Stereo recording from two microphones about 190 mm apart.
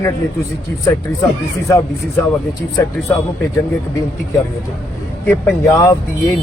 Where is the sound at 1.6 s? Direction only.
15° left (ahead or behind).